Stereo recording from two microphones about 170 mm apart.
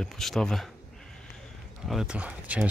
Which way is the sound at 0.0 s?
Centre (ahead or behind).